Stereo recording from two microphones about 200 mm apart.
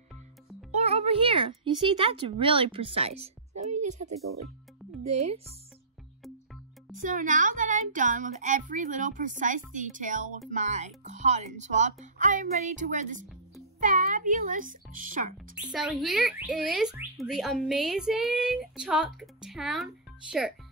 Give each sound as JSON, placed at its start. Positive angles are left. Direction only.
{"t": 0.7, "sound": "a child's voice", "side_deg": -30}
{"t": 7.0, "sound": "a woman's voice", "side_deg": -40}
{"t": 15.5, "sound": "speech", "side_deg": -5}